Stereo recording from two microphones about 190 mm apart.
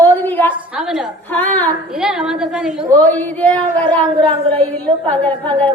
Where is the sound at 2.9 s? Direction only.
10° left (ahead or behind).